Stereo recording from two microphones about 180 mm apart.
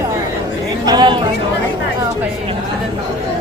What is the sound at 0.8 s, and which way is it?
Speech, 25° right (ahead or behind).